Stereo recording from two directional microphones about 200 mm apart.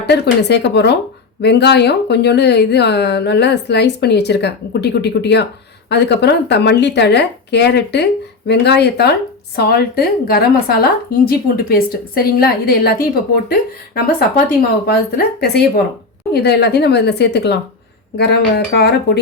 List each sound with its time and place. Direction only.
0.0 s a woman's voice: 55° left (ahead or behind)